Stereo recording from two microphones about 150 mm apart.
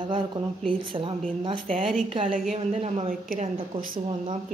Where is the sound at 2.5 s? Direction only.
45° right (ahead or behind).